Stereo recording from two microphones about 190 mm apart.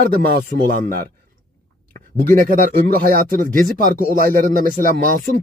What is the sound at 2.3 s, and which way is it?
Speech, 45° right (ahead or behind).